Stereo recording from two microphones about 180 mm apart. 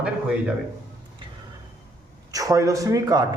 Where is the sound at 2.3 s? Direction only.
20° right (ahead or behind).